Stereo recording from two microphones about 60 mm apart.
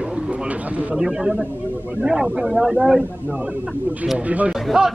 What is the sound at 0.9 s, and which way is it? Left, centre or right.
Speech, centre.